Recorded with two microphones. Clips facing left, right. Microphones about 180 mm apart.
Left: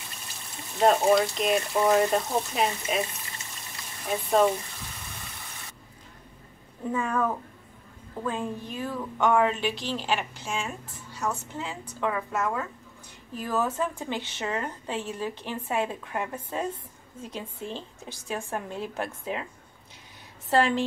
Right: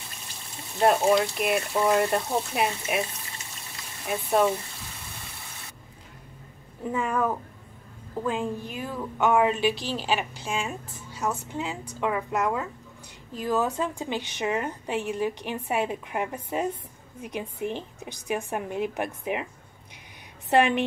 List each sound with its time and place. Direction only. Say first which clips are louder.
0.7 s speech: even; centre (ahead or behind)
4.0 s speech: left 1 dB; 5° right (ahead or behind)
6.9 s a woman's voice: right 1 dB; 10° right (ahead or behind)
20.4 s a woman's voice: right 2 dB; 20° right (ahead or behind)